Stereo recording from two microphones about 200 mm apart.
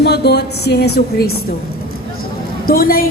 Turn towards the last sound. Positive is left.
turn(degrees=45)  # may be behind; listen again after turning